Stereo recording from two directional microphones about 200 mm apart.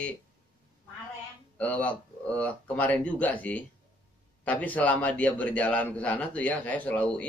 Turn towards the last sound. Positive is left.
turn(degrees=5)  # may be behind; listen again after turning